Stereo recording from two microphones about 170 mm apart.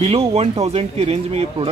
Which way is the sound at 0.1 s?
35° right (ahead or behind).